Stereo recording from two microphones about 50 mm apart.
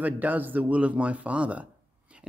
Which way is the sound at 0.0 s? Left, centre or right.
Right.